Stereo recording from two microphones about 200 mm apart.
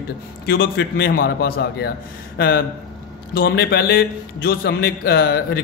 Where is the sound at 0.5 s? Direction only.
55° left (ahead or behind).